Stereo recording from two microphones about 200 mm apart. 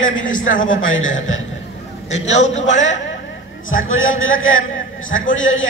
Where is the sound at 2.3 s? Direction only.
35° left (ahead or behind).